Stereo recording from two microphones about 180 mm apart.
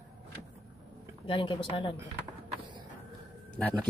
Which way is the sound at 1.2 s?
30° left (ahead or behind).